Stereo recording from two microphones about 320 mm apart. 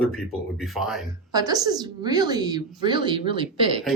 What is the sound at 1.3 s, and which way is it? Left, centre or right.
A woman's voice, centre.